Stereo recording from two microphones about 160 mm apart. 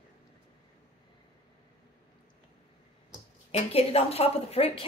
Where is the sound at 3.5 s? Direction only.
40° left (ahead or behind).